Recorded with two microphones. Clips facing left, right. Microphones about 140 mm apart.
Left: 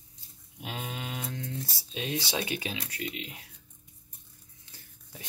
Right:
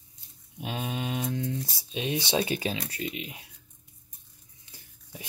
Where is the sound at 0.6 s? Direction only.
20° right (ahead or behind).